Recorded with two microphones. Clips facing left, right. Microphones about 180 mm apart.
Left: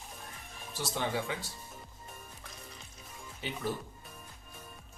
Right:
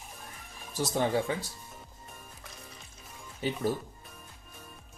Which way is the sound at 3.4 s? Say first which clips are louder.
Right 6 dB; 40° right (ahead or behind).